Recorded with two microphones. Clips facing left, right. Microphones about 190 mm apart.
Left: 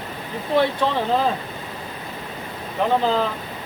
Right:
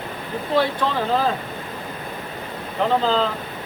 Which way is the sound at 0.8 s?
25° left (ahead or behind).